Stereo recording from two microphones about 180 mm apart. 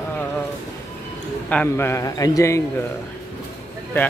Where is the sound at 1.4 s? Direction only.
10° left (ahead or behind).